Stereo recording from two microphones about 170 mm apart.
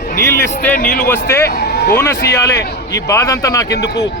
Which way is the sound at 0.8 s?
60° left (ahead or behind).